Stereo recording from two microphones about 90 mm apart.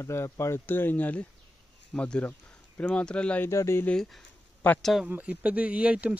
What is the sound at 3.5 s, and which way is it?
Speech, 30° left (ahead or behind).